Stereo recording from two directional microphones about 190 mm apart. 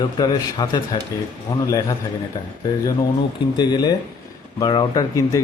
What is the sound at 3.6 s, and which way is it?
Speech, 20° left (ahead or behind).